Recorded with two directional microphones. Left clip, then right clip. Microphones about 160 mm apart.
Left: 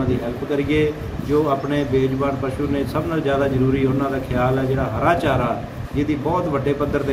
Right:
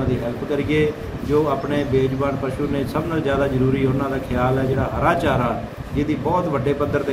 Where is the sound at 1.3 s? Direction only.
Centre (ahead or behind).